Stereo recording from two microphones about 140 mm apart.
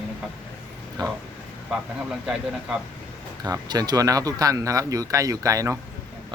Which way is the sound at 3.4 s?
30° right (ahead or behind).